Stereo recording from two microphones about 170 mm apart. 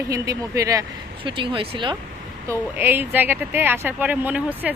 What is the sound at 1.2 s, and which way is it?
Speech, 30° right (ahead or behind).